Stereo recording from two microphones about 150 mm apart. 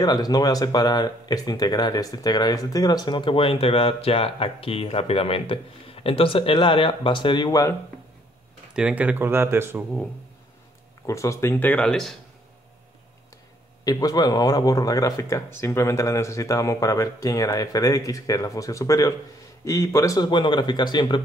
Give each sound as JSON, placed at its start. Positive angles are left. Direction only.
{"t": 0.0, "sound": "speech", "side_deg": 25}
{"t": 8.7, "sound": "speech", "side_deg": -10}
{"t": 11.1, "sound": "speech", "side_deg": 20}
{"t": 13.8, "sound": "speech", "side_deg": 25}